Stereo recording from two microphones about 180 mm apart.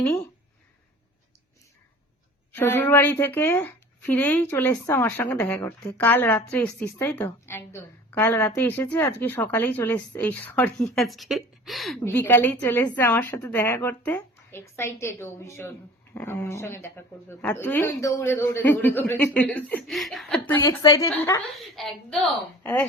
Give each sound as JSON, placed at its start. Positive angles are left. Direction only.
{"t": 2.5, "sound": "speech", "side_deg": 10}
{"t": 12.0, "sound": "speech", "side_deg": 15}
{"t": 20.6, "sound": "a woman's voice", "side_deg": 25}
{"t": 21.8, "sound": "a woman's voice", "side_deg": 0}